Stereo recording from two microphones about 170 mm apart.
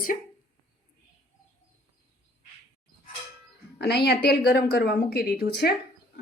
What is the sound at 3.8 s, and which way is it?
A woman's voice, 75° left (ahead or behind).